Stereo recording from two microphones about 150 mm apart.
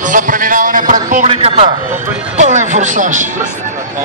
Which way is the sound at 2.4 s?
55° right (ahead or behind).